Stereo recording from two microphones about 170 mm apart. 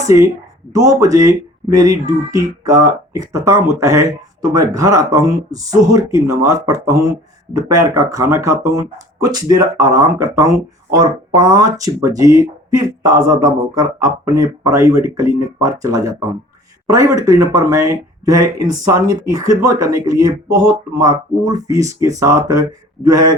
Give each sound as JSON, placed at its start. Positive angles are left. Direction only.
{"t": 0.0, "sound": "speech", "side_deg": -20}